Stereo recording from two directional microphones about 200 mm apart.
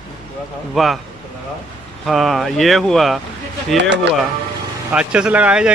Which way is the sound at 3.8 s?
60° right (ahead or behind).